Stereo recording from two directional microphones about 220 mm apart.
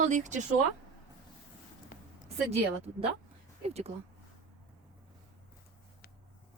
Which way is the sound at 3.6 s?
30° right (ahead or behind).